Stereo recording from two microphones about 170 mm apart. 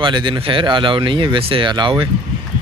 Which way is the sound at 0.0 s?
25° right (ahead or behind).